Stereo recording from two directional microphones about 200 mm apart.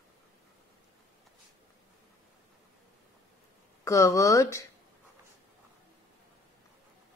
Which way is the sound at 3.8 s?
15° left (ahead or behind).